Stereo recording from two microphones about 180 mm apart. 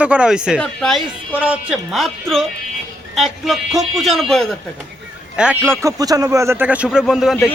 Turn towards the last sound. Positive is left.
turn(degrees=0)  # may be behind; listen again after turning